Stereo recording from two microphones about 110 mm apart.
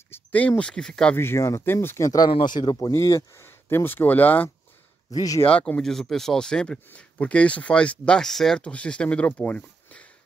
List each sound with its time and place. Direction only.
0.1 s speech: 15° left (ahead or behind)
1.1 s speech: 25° left (ahead or behind)
2.2 s speech: 45° left (ahead or behind)
2.8 s speech: 25° left (ahead or behind)
5.1 s speech: 35° left (ahead or behind)
5.5 s speech: 10° left (ahead or behind)